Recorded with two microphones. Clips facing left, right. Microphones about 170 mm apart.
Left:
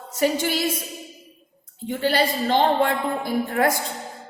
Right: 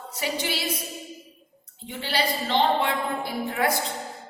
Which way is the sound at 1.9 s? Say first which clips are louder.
Left 6 dB; 45° left (ahead or behind).